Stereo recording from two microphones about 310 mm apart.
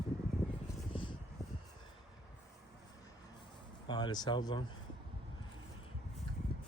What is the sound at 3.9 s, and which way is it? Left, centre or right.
Speech, centre.